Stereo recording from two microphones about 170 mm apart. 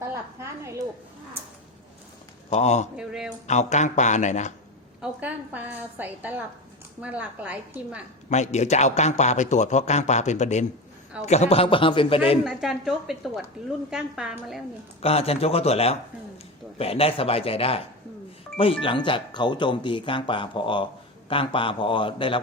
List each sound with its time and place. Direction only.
0.1 s a sound: 15° right (ahead or behind)
2.5 s a man's voice: 40° left (ahead or behind)
2.9 s a woman's voice: 5° right (ahead or behind)
3.4 s a man's voice: 45° left (ahead or behind)
4.9 s a woman's voice: 10° right (ahead or behind)
8.3 s a man's voice: 40° left (ahead or behind)
12.5 s a woman's voice: 5° right (ahead or behind)
15.0 s a man's voice: 35° left (ahead or behind)